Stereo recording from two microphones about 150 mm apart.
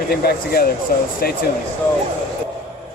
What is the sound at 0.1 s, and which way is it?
Speech, 90° left.